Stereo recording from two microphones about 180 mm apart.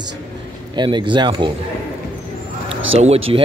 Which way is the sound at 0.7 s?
25° right (ahead or behind).